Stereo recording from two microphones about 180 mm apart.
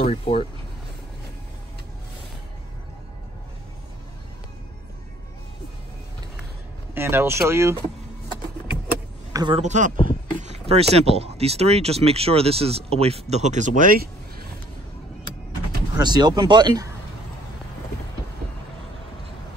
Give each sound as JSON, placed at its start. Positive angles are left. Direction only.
{"t": 0.0, "sound": "speech", "side_deg": 35}
{"t": 6.9, "sound": "speech", "side_deg": -10}
{"t": 9.3, "sound": "a sound", "side_deg": -25}
{"t": 9.6, "sound": "speech", "side_deg": -40}
{"t": 15.9, "sound": "speech", "side_deg": -25}